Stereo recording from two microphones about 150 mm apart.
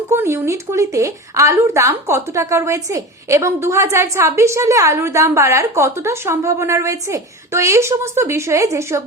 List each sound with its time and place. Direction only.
0.1 s speech: 20° right (ahead or behind)